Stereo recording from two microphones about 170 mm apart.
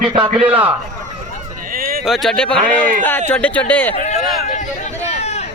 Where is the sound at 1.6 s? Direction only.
60° right (ahead or behind).